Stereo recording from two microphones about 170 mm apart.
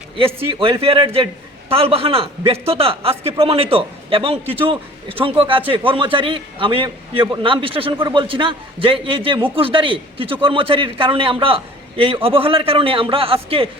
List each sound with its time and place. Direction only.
0.3 s a man's voice: 35° right (ahead or behind)